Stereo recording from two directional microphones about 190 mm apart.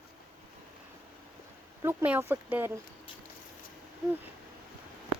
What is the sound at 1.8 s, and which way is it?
Speech, 10° right (ahead or behind).